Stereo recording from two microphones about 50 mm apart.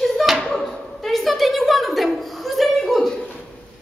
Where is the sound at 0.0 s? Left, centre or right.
Centre.